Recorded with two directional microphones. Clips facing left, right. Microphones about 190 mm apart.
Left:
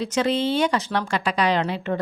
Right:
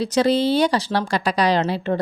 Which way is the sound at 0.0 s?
35° right (ahead or behind).